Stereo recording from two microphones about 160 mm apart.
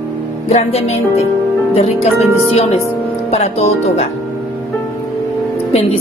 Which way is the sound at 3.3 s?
40° left (ahead or behind).